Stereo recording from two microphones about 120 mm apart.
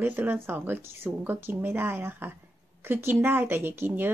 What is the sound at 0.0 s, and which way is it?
Speech, 15° right (ahead or behind).